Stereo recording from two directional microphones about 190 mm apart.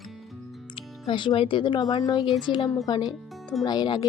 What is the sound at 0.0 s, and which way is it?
Music, centre (ahead or behind).